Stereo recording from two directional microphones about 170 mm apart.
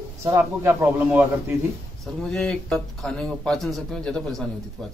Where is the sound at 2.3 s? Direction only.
5° left (ahead or behind).